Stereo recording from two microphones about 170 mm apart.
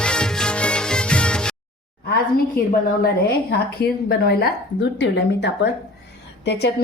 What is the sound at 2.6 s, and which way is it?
Speech, 60° left (ahead or behind).